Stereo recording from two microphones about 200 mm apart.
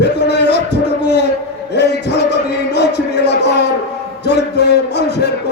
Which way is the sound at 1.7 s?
55° left (ahead or behind).